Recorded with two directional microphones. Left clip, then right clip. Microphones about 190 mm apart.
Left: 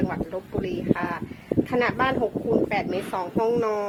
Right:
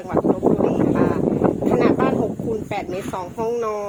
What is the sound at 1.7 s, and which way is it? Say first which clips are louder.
Speech: right 3 dB; 5° right (ahead or behind).